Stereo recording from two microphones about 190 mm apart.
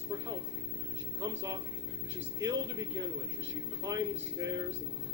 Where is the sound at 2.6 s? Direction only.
75° right (ahead or behind).